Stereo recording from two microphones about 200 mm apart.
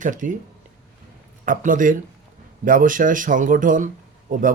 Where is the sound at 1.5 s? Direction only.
40° right (ahead or behind).